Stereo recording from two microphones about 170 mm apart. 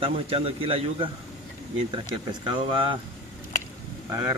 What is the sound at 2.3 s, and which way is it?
Speech, 30° right (ahead or behind).